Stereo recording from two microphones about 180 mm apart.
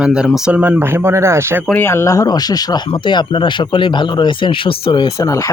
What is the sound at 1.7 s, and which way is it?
Speech, 15° left (ahead or behind).